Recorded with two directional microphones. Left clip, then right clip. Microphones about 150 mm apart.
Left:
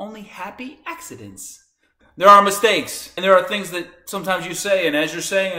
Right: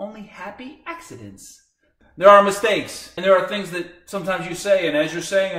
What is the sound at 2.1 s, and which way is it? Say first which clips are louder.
A man's voice: left 1 dB; 15° left (ahead or behind).